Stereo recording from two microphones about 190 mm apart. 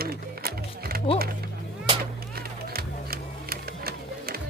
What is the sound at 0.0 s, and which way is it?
Music, 55° right (ahead or behind).